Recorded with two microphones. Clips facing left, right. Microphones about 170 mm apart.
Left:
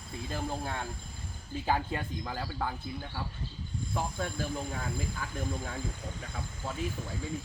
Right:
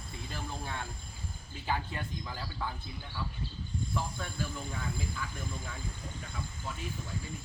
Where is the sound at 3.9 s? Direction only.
50° left (ahead or behind).